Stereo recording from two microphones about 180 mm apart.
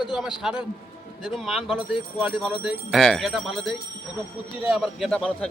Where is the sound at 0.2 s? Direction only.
Centre (ahead or behind).